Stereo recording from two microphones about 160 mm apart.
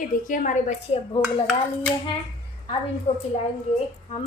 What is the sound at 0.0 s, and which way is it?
A woman's voice, 55° left (ahead or behind).